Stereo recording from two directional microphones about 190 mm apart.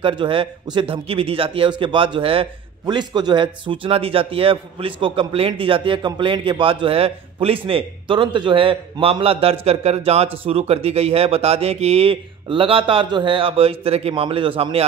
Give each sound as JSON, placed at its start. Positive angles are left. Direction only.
{"t": 0.0, "sound": "a man's voice", "side_deg": -25}